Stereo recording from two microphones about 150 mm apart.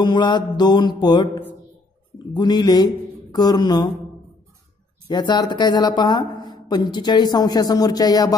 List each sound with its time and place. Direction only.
0.0 s speech: 30° left (ahead or behind)
5.0 s speech: 30° left (ahead or behind)